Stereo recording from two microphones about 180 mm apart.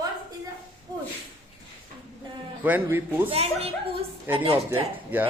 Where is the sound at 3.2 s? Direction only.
35° right (ahead or behind).